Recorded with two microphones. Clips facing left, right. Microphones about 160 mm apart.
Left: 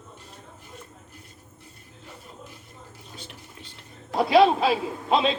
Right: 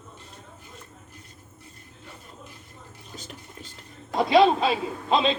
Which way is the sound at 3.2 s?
45° right (ahead or behind).